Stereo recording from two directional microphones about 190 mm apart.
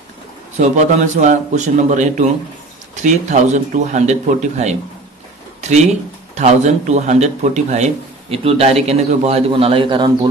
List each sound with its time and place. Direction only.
0.6 s a man's voice: 40° right (ahead or behind)
5.6 s a sound: 35° right (ahead or behind)
6.3 s a man's voice: 35° right (ahead or behind)